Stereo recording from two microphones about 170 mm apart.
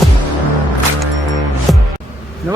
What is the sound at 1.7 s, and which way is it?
Music, centre (ahead or behind).